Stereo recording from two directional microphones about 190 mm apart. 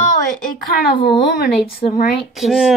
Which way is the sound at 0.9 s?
50° left (ahead or behind).